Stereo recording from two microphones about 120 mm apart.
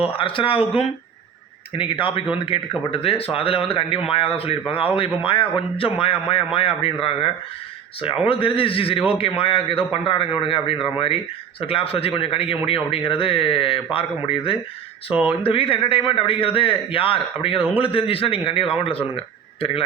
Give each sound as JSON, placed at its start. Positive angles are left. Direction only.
{"t": 0.2, "sound": "a man's voice", "side_deg": 50}
{"t": 15.1, "sound": "speech", "side_deg": -10}
{"t": 15.4, "sound": "a man's voice", "side_deg": 50}